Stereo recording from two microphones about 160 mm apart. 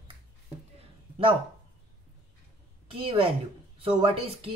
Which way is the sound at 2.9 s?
35° right (ahead or behind).